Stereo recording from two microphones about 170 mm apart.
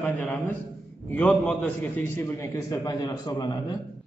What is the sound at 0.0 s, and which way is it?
A man's voice, 10° left (ahead or behind).